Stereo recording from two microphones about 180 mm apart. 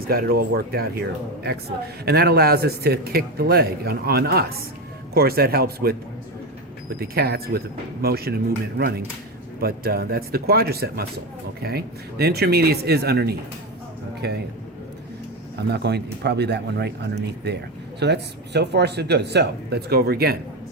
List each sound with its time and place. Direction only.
0.0 s a man's voice: 55° right (ahead or behind)
2.0 s a man's voice: 60° right (ahead or behind)
7.0 s a man's voice: 60° right (ahead or behind)
15.5 s speech: 65° right (ahead or behind)